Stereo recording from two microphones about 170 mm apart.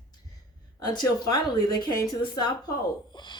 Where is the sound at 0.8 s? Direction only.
25° left (ahead or behind).